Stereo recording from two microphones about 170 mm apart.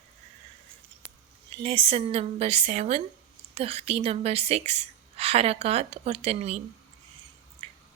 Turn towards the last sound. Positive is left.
turn(degrees=-35)  # may be behind; listen again after turning